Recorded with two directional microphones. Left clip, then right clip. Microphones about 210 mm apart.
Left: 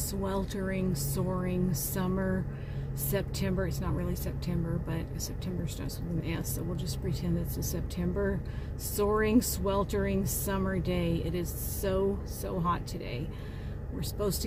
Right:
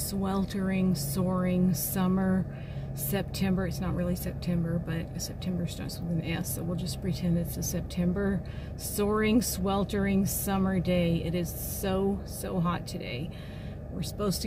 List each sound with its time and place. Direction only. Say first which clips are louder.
0.2 s a woman's voice: right 1 dB; centre (ahead or behind)